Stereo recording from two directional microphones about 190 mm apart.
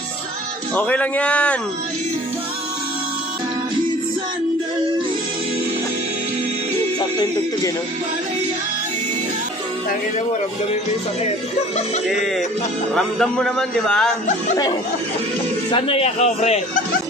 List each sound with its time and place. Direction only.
0.7 s a man's voice: 10° left (ahead or behind)
7.0 s music: 25° left (ahead or behind)
11.2 s speech: 35° left (ahead or behind)
12.9 s a man's voice: 5° left (ahead or behind)
15.7 s speech: 30° left (ahead or behind)